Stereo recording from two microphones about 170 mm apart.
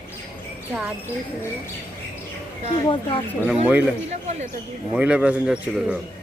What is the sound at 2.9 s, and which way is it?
Speech, 35° left (ahead or behind).